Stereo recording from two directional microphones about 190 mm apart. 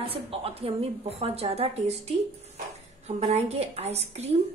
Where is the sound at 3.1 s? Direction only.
35° right (ahead or behind).